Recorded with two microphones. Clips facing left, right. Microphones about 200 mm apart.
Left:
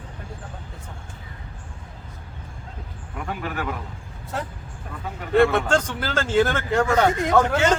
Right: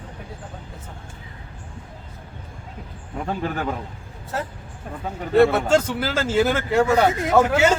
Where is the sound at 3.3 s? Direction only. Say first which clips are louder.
Right 3 dB; 30° right (ahead or behind).